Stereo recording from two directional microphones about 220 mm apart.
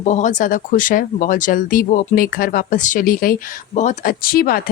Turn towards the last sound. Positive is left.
turn(degrees=40)  # may be behind; listen again after turning